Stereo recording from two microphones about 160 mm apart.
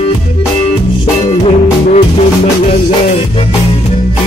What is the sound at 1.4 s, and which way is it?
Music, 45° left (ahead or behind).